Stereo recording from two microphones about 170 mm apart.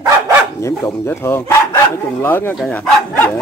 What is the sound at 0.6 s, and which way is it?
Speech, 15° left (ahead or behind).